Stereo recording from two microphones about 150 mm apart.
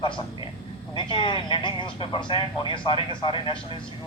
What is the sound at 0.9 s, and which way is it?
A man's voice, 30° left (ahead or behind).